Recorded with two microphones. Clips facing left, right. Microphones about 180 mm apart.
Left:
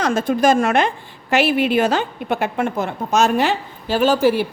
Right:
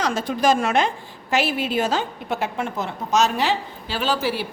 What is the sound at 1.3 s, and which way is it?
A woman's voice, 65° left (ahead or behind).